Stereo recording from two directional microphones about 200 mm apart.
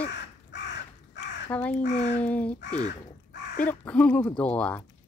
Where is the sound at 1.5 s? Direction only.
5° left (ahead or behind).